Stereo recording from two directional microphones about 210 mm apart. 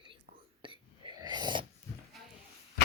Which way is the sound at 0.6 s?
25° right (ahead or behind).